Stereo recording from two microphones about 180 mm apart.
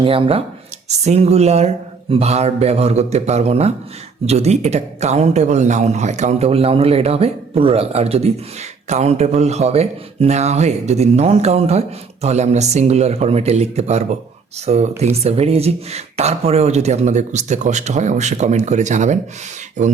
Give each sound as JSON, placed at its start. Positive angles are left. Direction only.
{"t": 0.0, "sound": "speech", "side_deg": -30}